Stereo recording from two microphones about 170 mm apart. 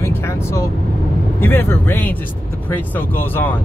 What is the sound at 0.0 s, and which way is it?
Vehicle, 15° left (ahead or behind).